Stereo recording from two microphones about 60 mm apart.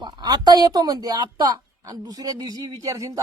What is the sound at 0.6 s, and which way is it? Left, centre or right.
A woman's voice, right.